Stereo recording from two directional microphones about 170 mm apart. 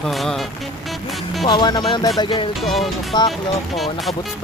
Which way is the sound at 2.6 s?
Centre (ahead or behind).